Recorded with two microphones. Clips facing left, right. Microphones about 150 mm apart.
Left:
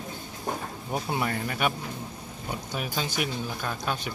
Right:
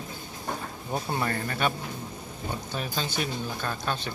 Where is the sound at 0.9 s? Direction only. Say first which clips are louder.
Even; 10° left (ahead or behind).